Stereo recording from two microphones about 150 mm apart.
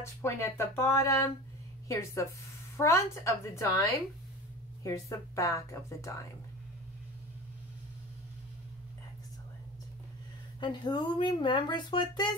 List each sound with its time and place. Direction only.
0.0 s speech: 20° left (ahead or behind)
4.8 s speech: 20° left (ahead or behind)
10.6 s speech: 30° left (ahead or behind)